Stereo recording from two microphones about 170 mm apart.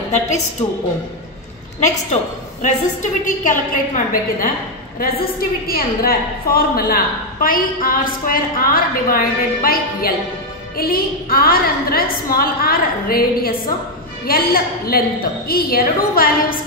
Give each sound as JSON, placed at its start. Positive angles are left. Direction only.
{"t": 2.6, "sound": "a woman's voice", "side_deg": 50}